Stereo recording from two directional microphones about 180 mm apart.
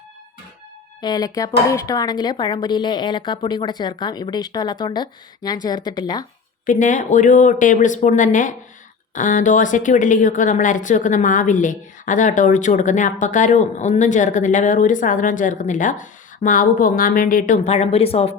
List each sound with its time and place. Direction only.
1.0 s a woman's voice: 20° left (ahead or behind)
6.7 s a woman's voice: 45° left (ahead or behind)